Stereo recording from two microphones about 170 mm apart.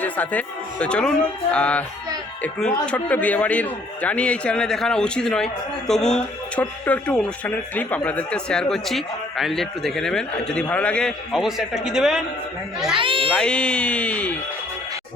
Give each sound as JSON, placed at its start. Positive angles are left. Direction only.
{"t": 0.0, "sound": "a man's voice", "side_deg": 10}
{"t": 13.0, "sound": "speech", "side_deg": -30}
{"t": 13.3, "sound": "speech", "side_deg": 5}